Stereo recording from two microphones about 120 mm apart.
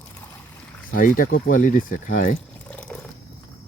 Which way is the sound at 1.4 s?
90° left.